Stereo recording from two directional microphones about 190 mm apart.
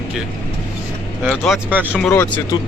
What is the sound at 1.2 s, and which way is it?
Speech, centre (ahead or behind).